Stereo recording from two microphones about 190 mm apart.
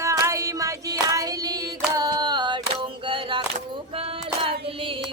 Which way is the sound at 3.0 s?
25° right (ahead or behind).